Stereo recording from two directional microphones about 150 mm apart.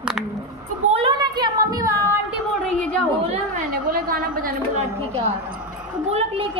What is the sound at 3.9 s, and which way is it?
Speech, 75° right (ahead or behind).